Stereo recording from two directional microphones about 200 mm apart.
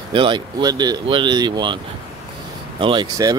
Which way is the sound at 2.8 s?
25° right (ahead or behind).